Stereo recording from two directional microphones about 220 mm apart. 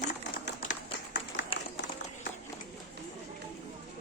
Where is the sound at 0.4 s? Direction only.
50° left (ahead or behind).